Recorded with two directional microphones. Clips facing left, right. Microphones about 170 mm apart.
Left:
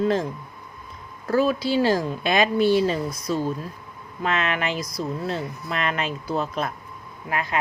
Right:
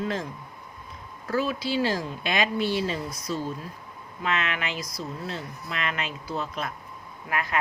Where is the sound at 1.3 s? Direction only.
40° left (ahead or behind).